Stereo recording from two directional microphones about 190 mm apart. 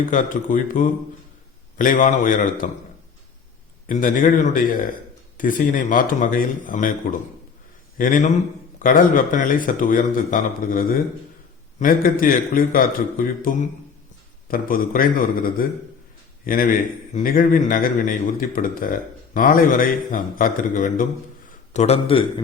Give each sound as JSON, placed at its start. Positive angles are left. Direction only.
{"t": 0.0, "sound": "speech", "side_deg": 45}
{"t": 3.8, "sound": "a man's voice", "side_deg": 45}